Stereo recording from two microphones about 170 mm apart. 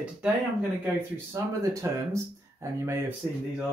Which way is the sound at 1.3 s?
15° right (ahead or behind).